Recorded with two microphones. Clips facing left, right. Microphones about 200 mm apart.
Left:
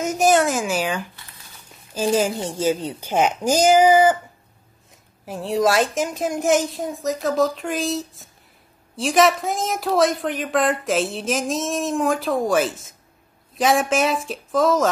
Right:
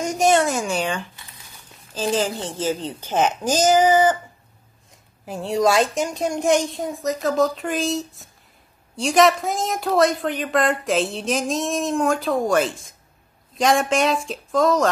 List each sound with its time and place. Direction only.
0.0 s a sound: centre (ahead or behind)
2.0 s a woman's voice: 10° left (ahead or behind)
5.2 s a woman's voice: centre (ahead or behind)